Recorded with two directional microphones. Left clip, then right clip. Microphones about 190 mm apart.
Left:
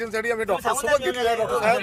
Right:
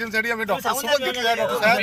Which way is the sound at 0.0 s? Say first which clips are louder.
Right 1 dB; 60° left (ahead or behind).